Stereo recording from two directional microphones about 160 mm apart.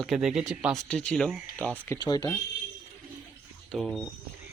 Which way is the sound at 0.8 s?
5° left (ahead or behind).